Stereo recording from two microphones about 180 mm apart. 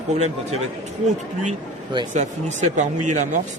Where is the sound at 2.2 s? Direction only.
40° right (ahead or behind).